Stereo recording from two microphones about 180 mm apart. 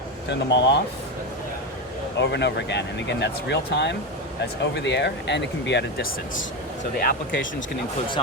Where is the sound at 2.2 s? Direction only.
75° left (ahead or behind).